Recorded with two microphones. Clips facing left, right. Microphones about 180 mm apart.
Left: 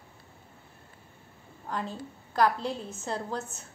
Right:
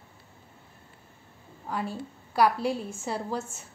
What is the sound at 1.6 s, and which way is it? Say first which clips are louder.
A woman's voice: right 2 dB; 10° right (ahead or behind).